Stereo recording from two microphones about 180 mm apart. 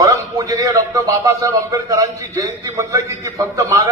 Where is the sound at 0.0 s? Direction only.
20° right (ahead or behind).